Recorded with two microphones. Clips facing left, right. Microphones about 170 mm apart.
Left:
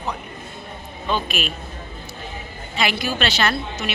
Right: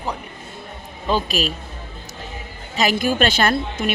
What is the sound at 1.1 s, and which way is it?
Speech, 35° right (ahead or behind).